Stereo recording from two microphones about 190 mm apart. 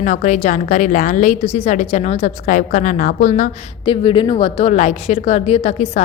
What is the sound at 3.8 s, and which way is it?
A woman's voice, 25° left (ahead or behind).